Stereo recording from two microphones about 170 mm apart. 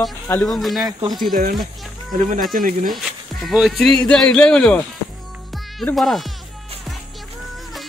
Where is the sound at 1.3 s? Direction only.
55° right (ahead or behind).